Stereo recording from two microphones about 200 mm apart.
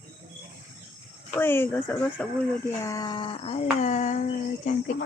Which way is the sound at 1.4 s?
10° left (ahead or behind).